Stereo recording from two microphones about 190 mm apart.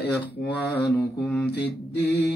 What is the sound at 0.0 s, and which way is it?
Mantra, 60° left (ahead or behind).